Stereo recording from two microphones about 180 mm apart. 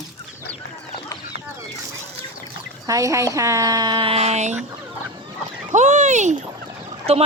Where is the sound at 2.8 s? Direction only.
20° right (ahead or behind); by 4.5 s 40° right (ahead or behind).